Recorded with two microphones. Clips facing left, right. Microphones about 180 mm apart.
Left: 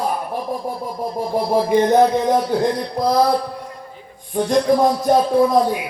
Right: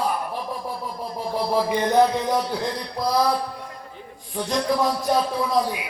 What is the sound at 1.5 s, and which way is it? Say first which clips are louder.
Music: left 5 dB; 45° left (ahead or behind).